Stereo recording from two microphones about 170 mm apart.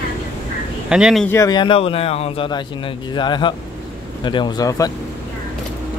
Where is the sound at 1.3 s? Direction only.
20° left (ahead or behind).